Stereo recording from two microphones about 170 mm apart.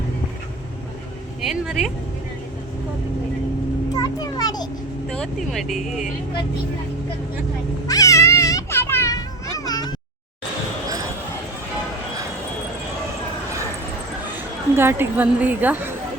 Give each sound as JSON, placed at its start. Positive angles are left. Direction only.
{"t": 1.5, "sound": "speech", "side_deg": 0}
{"t": 3.9, "sound": "children playing", "side_deg": 20}
{"t": 5.0, "sound": "speech", "side_deg": 5}
{"t": 7.9, "sound": "a sound", "side_deg": 20}
{"t": 14.3, "sound": "speech", "side_deg": -10}